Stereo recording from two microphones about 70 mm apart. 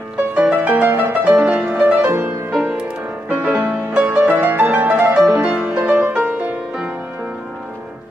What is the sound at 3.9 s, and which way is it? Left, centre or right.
Music, centre.